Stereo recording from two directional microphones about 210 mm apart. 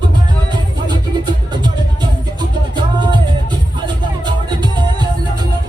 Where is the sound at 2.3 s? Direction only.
20° right (ahead or behind).